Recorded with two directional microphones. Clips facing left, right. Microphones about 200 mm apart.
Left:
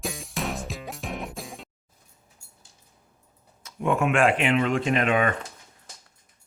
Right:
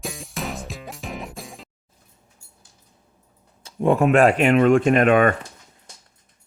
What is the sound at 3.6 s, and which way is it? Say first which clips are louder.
Speech: right 6 dB; 35° right (ahead or behind).